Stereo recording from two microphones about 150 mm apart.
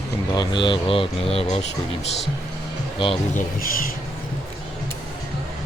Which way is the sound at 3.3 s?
65° left (ahead or behind).